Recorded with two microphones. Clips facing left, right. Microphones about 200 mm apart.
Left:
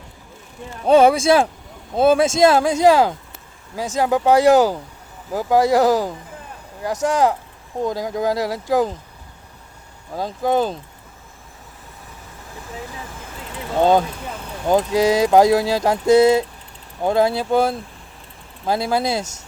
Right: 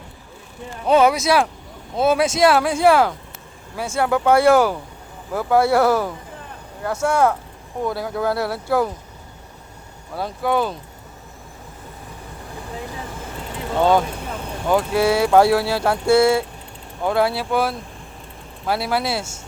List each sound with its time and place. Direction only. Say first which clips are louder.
0.9 s speech: left 3 dB; 30° left (ahead or behind); by 8.8 s 15° left (ahead or behind)
10.2 s speech: left 2 dB; 20° left (ahead or behind)
14.7 s speech: left 2 dB; 20° left (ahead or behind)